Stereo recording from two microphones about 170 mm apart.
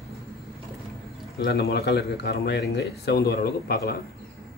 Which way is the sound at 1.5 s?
70° left (ahead or behind).